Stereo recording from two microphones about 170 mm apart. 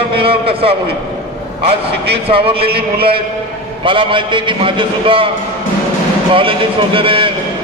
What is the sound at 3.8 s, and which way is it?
A man's voice, 30° right (ahead or behind).